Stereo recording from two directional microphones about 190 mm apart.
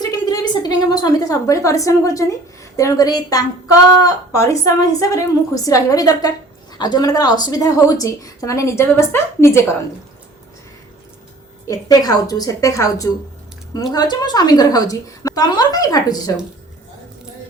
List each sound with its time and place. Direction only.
0.0 s a woman's voice: 20° left (ahead or behind)
11.6 s a woman's voice: 20° left (ahead or behind)